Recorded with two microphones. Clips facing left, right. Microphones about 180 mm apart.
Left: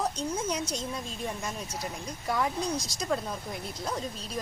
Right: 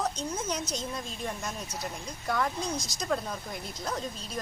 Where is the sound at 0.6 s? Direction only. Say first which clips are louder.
Left 1 dB; 30° left (ahead or behind).